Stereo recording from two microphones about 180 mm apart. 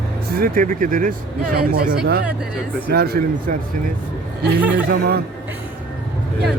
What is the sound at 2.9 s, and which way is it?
Speech, 60° right (ahead or behind).